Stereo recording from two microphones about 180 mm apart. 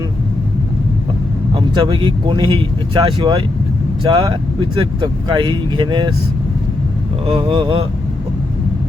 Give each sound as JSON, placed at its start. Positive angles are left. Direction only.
{"t": 1.5, "sound": "speech", "side_deg": -30}
{"t": 7.3, "sound": "speech", "side_deg": -30}